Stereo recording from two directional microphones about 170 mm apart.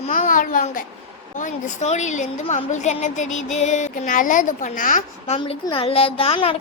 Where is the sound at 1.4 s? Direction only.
45° left (ahead or behind).